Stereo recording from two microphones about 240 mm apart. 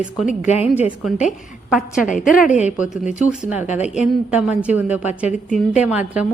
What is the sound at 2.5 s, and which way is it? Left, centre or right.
Speech, left.